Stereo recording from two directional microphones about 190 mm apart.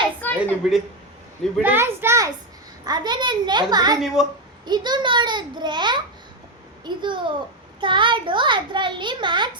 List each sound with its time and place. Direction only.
0.2 s a woman's voice: 10° left (ahead or behind)
1.6 s a child's voice: 10° right (ahead or behind)
4.0 s a woman's voice: centre (ahead or behind)
4.6 s a child's voice: 25° right (ahead or behind)